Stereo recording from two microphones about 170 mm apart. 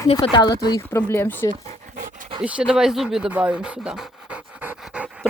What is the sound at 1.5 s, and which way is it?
Dog, 50° right (ahead or behind).